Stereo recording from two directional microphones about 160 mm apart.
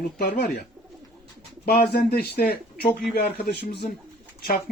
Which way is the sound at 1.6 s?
75° left (ahead or behind).